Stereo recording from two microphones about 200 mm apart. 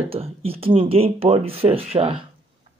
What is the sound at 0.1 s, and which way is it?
Speech, 30° right (ahead or behind).